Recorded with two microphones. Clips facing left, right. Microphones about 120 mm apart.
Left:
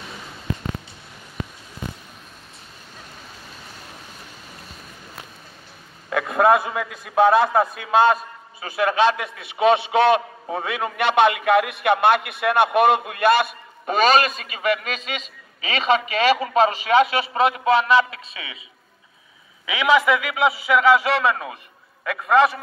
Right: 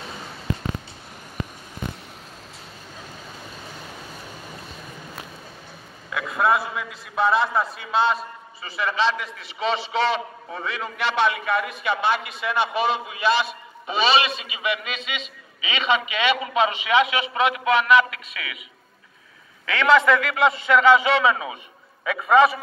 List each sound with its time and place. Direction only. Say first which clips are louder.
6.0 s a man's voice: left 5 dB; 55° left (ahead or behind); by 18.6 s 30° left (ahead or behind)
19.6 s a man's voice: right 1 dB; 10° left (ahead or behind)